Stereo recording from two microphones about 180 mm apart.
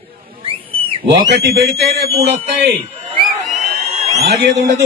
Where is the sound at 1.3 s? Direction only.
65° right (ahead or behind).